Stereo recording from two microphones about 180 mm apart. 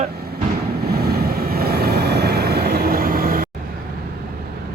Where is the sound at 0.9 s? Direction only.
60° right (ahead or behind).